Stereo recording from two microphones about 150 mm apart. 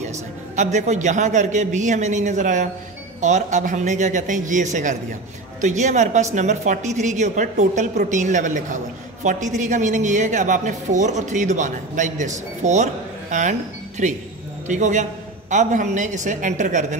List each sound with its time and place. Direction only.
0.6 s a man's voice: 50° right (ahead or behind)